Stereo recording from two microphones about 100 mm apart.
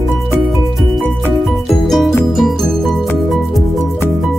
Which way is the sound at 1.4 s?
Centre (ahead or behind).